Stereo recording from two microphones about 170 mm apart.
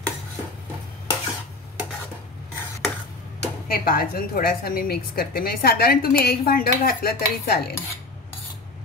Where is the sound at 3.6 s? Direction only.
60° left (ahead or behind).